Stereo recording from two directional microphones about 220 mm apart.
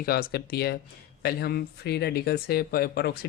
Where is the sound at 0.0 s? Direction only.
45° left (ahead or behind).